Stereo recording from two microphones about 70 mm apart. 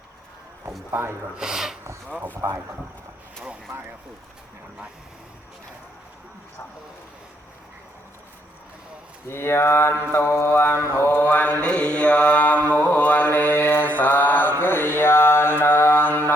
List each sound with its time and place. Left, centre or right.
1.4 s speech: centre
3.7 s speech: right
9.3 s mantra: left